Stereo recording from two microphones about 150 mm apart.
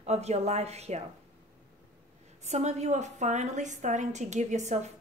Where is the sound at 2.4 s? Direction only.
45° right (ahead or behind).